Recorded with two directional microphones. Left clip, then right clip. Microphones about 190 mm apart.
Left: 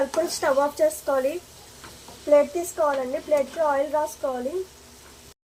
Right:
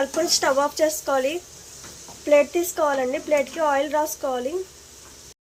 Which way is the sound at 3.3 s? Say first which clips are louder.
Right 1 dB; 20° right (ahead or behind).